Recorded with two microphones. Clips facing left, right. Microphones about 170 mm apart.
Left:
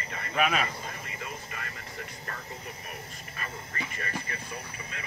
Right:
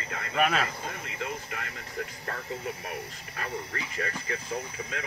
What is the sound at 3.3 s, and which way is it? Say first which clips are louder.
Speech: right 4 dB; 90° right.